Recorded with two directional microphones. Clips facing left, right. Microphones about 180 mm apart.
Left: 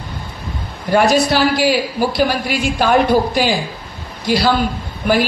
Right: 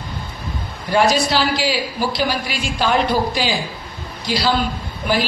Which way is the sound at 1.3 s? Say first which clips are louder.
Left 5 dB; 50° left (ahead or behind).